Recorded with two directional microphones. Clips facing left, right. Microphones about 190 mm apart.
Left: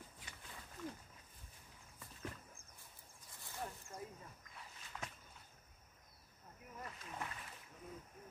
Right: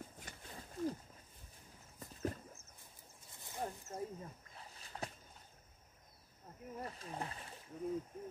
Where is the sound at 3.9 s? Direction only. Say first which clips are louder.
Right 7 dB; 35° right (ahead or behind).